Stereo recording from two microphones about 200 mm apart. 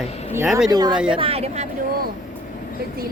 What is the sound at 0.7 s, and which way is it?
Speech, 20° right (ahead or behind).